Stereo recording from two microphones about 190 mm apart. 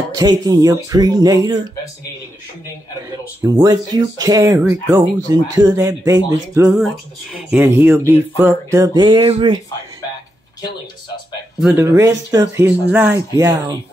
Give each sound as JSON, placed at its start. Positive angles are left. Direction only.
{"t": 0.1, "sound": "speech", "side_deg": -20}
{"t": 3.4, "sound": "speech", "side_deg": -20}
{"t": 11.6, "sound": "speech", "side_deg": -10}